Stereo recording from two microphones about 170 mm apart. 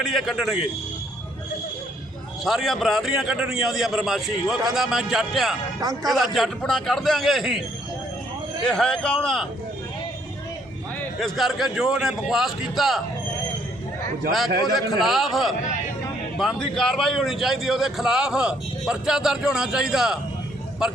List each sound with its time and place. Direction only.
0.0 s a man's voice: centre (ahead or behind)
2.4 s a man's voice: centre (ahead or behind)
5.8 s a man's voice: 20° right (ahead or behind)
6.1 s a man's voice: centre (ahead or behind)
8.6 s a man's voice: 5° left (ahead or behind)
11.2 s a man's voice: centre (ahead or behind)
14.8 s a man's voice: centre (ahead or behind)